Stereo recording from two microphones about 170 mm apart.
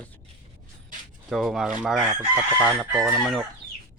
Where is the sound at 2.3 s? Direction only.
15° right (ahead or behind).